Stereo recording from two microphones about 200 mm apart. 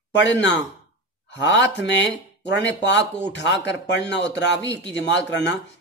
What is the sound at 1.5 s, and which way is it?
Speech, 65° left (ahead or behind).